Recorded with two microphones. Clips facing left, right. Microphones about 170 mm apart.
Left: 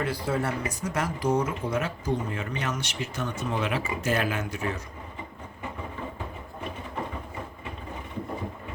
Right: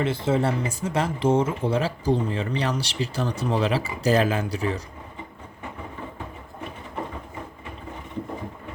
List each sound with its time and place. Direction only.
0.0 s speech: 25° right (ahead or behind)